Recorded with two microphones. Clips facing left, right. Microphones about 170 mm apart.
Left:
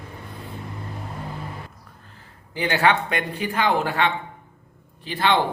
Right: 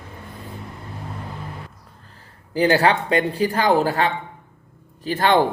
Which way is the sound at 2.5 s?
40° right (ahead or behind).